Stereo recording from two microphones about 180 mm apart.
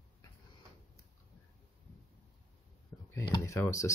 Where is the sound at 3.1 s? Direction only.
15° left (ahead or behind).